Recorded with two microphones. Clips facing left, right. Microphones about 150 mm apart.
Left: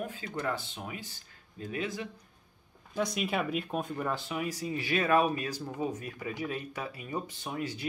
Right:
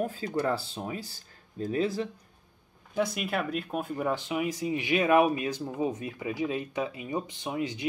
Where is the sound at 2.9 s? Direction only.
5° right (ahead or behind).